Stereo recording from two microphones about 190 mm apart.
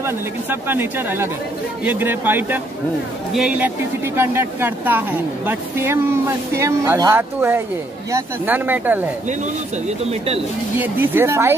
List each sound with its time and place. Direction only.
0.0 s speech: 10° right (ahead or behind)
9.8 s speech: 30° right (ahead or behind)
10.8 s speech: 10° right (ahead or behind)